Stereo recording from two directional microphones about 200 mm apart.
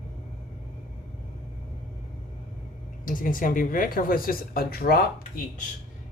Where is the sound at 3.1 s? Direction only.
40° left (ahead or behind).